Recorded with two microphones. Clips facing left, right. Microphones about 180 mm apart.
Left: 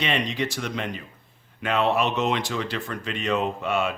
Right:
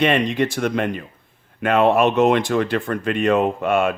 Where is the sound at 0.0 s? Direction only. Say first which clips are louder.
Right 8 dB; 55° right (ahead or behind).